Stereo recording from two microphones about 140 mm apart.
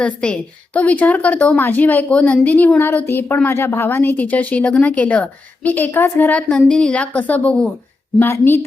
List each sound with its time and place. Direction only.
0.0 s a woman's voice: 10° left (ahead or behind)